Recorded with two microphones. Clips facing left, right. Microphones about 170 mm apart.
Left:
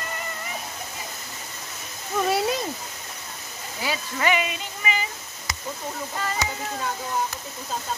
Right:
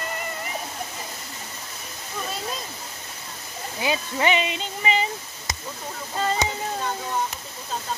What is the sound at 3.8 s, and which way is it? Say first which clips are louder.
Speech: right 2 dB; 25° right (ahead or behind).